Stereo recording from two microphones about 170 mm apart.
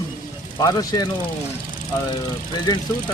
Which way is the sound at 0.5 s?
25° left (ahead or behind).